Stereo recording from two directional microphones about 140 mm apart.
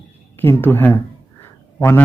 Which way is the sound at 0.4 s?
15° left (ahead or behind).